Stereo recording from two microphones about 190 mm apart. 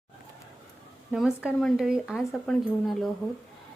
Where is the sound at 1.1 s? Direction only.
5° right (ahead or behind).